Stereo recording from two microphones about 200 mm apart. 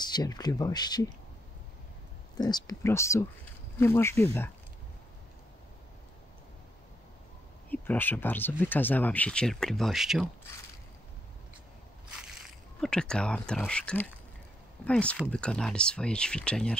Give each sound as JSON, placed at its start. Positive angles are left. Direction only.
{"t": 0.0, "sound": "speech", "side_deg": 20}
{"t": 2.3, "sound": "speech", "side_deg": 20}
{"t": 7.7, "sound": "speech", "side_deg": 10}
{"t": 12.1, "sound": "speech", "side_deg": -5}